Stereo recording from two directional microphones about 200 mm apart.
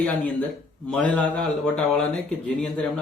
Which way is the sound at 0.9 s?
5° left (ahead or behind).